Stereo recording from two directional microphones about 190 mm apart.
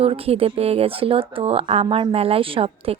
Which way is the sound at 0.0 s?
30° right (ahead or behind).